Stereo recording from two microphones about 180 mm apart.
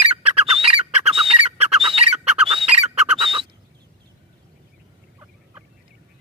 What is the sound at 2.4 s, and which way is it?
Chicken, 35° right (ahead or behind).